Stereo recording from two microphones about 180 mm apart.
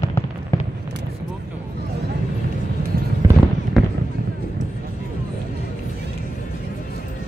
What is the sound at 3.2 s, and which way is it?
Run, 20° right (ahead or behind).